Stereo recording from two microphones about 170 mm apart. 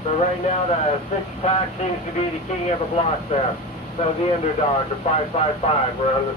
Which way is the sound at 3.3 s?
35° left (ahead or behind).